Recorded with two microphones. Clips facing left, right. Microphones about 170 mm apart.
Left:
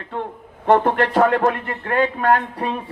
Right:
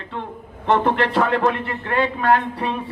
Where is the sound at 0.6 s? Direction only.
45° left (ahead or behind).